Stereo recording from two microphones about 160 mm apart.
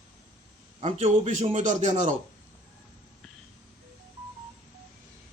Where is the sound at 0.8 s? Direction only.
40° right (ahead or behind).